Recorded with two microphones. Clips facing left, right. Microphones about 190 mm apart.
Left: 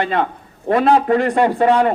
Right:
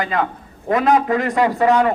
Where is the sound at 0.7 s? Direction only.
30° left (ahead or behind).